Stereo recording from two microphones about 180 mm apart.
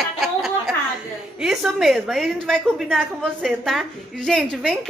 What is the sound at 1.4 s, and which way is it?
A woman's voice, centre (ahead or behind).